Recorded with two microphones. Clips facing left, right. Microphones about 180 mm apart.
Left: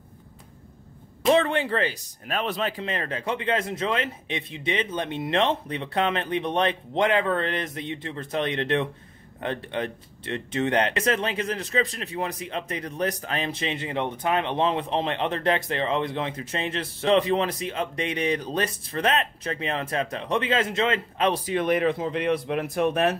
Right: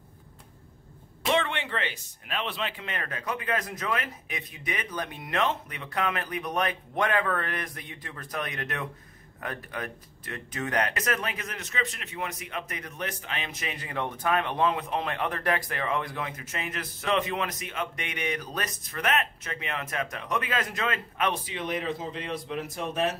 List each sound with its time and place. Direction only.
1.2 s speech: 35° left (ahead or behind)
21.5 s speech: 55° left (ahead or behind)